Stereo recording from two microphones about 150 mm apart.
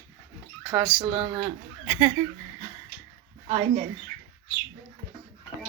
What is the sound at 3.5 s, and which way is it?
Speech, 35° right (ahead or behind).